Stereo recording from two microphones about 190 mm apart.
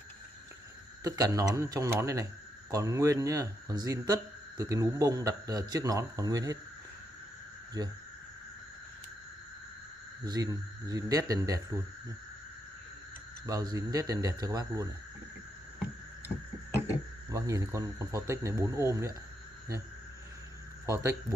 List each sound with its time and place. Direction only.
1.0 s a man's voice: 20° right (ahead or behind)
7.8 s speech: 20° right (ahead or behind)
10.2 s speech: 20° right (ahead or behind)
13.5 s speech: 20° right (ahead or behind)
17.3 s a man's voice: 15° right (ahead or behind)
20.8 s a man's voice: 15° right (ahead or behind)